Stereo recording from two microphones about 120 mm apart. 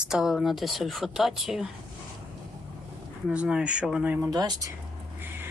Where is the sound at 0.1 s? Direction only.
Centre (ahead or behind).